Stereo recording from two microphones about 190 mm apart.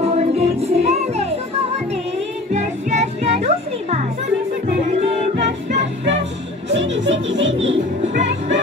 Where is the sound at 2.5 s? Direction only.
40° right (ahead or behind).